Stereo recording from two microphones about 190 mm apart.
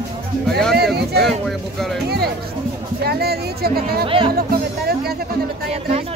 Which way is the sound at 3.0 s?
55° right (ahead or behind).